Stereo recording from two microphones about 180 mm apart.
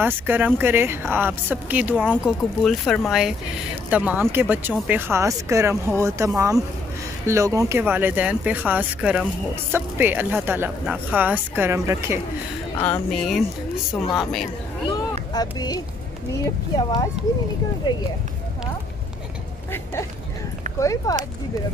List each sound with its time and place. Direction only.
0.0 s speech: 10° right (ahead or behind)
12.8 s speech: 5° left (ahead or behind)
15.3 s speech: 20° left (ahead or behind)
20.8 s speech: 20° left (ahead or behind)